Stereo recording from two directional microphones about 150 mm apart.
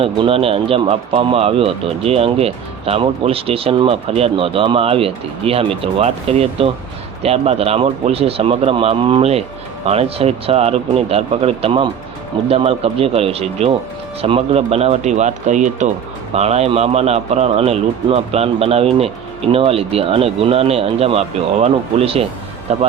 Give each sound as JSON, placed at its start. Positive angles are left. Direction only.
{"t": 0.0, "sound": "speech", "side_deg": -40}